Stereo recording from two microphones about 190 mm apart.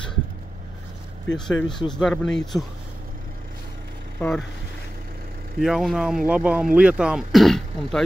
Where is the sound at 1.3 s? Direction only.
70° left (ahead or behind).